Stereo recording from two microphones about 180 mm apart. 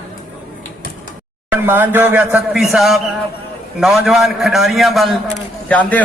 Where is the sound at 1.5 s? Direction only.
10° right (ahead or behind).